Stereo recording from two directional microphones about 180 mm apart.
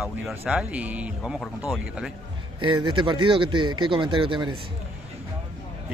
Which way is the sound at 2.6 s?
25° right (ahead or behind).